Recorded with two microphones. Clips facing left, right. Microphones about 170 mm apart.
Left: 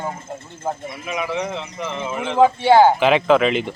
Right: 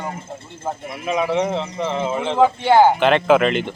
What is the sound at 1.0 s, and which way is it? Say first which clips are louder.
Speech: right 5 dB; 30° right (ahead or behind).